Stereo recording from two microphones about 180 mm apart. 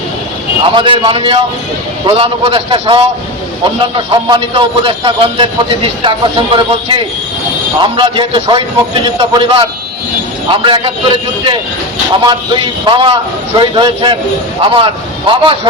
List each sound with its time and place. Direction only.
0.7 s a man's voice: 30° right (ahead or behind)
12.8 s a man's voice: 30° right (ahead or behind)